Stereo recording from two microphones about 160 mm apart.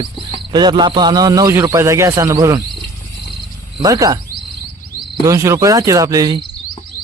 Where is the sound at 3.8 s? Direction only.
20° right (ahead or behind).